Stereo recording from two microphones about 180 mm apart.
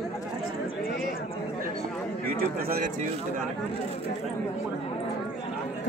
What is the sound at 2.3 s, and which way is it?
Speech, 55° right (ahead or behind).